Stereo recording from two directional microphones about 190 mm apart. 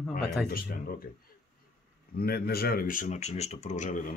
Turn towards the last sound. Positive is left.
turn(degrees=40)  # may be behind; listen again after turning